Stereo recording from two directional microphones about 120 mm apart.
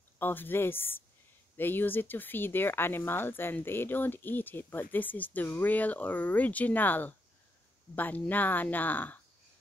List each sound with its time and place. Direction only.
0.2 s speech: 15° left (ahead or behind)